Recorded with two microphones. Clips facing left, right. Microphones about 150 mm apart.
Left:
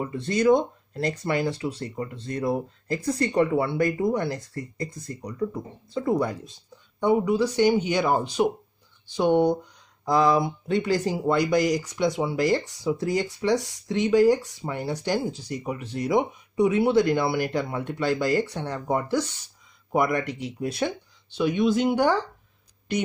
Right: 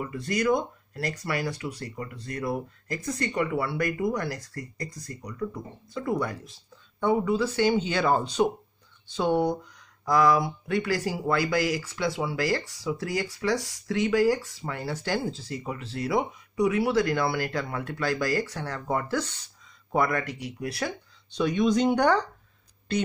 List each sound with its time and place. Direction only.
0.0 s speech: 25° left (ahead or behind)
21.3 s speech: 5° left (ahead or behind)